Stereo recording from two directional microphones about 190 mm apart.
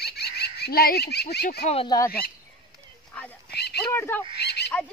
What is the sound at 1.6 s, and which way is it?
Speech, 35° left (ahead or behind).